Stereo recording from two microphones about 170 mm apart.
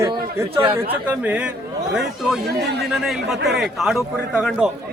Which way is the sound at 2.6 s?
75° right (ahead or behind).